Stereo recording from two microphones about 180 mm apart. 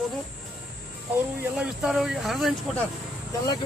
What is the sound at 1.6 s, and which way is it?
Speech, 5° right (ahead or behind).